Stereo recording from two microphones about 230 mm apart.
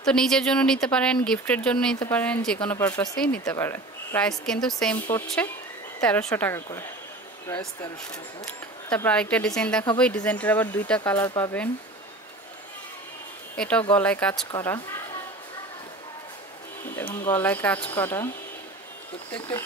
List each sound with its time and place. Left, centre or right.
0.0 s speech: centre
8.9 s speech: centre
13.6 s speech: centre
16.9 s speech: centre